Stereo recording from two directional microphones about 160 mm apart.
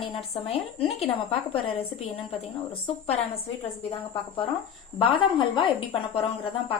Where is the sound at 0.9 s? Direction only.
40° left (ahead or behind).